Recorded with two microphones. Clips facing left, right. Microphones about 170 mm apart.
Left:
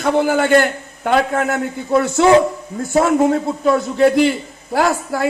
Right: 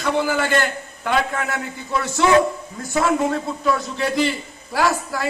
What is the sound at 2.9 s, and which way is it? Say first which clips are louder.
A man's voice: left 6 dB; 50° left (ahead or behind).